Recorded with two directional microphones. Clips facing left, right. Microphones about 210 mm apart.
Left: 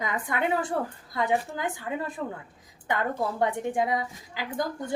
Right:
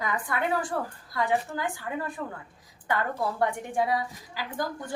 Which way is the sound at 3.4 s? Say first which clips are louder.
Left 1 dB; 20° left (ahead or behind).